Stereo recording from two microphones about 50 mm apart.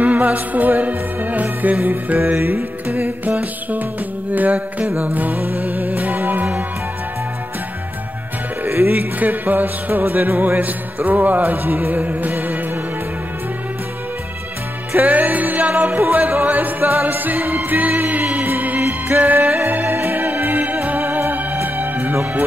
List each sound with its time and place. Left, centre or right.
0.0 s music: right
8.6 s music: right
15.0 s music: right